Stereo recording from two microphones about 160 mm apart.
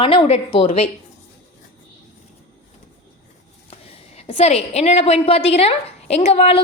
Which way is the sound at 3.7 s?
40° left (ahead or behind).